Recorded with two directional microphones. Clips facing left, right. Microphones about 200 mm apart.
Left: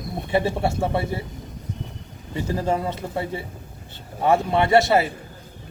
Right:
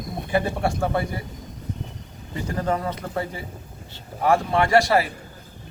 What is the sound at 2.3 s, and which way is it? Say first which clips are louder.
Speech: left 2 dB; 30° left (ahead or behind).